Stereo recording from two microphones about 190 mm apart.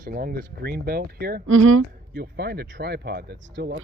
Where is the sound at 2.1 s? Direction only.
55° right (ahead or behind).